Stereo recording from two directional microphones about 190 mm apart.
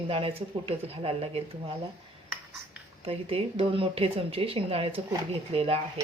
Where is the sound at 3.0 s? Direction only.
30° right (ahead or behind).